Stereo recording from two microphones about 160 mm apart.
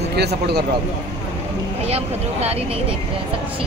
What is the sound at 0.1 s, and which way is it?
Speech, 90° right.